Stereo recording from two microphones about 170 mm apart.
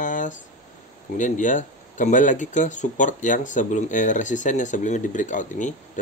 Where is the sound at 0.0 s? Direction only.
50° left (ahead or behind).